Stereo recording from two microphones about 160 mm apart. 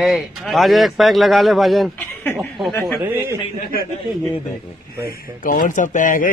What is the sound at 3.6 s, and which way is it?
Speech, 65° left (ahead or behind).